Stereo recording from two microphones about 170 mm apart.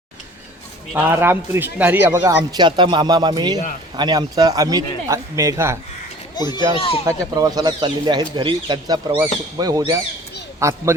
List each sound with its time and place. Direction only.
0.9 s a man's voice: 15° right (ahead or behind)
6.3 s a child's voice: 25° left (ahead or behind)
7.0 s a man's voice: 20° right (ahead or behind)